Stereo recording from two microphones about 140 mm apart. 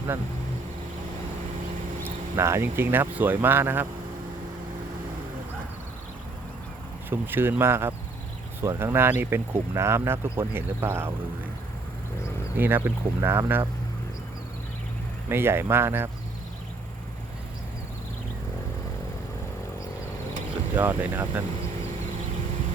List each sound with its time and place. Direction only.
2.0 s speech: 20° right (ahead or behind)
7.1 s speech: 15° right (ahead or behind)
12.5 s speech: 15° right (ahead or behind)
15.3 s speech: 15° right (ahead or behind)
20.7 s speech: 15° right (ahead or behind)